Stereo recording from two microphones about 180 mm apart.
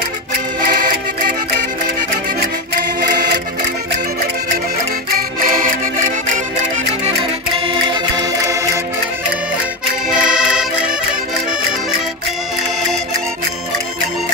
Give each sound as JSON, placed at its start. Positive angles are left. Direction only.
{"t": 0.7, "sound": "music", "side_deg": -50}
{"t": 5.4, "sound": "music", "side_deg": -50}
{"t": 7.6, "sound": "music", "side_deg": -25}
{"t": 10.0, "sound": "accordion", "side_deg": -5}